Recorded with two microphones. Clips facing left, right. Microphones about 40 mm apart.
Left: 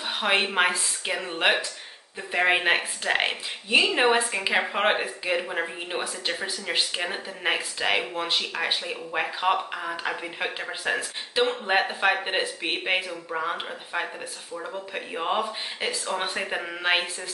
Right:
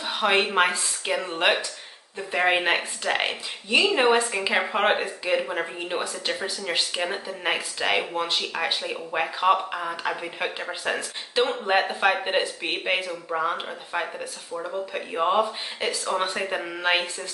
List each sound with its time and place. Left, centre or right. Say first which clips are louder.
0.0 s speech: right 2 dB; centre